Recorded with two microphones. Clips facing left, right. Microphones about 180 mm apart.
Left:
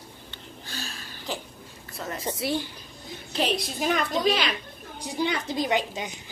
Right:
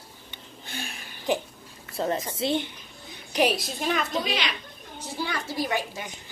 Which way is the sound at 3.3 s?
10° right (ahead or behind).